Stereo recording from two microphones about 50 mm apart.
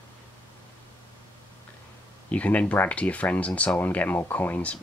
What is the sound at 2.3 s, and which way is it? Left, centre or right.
Speech, left.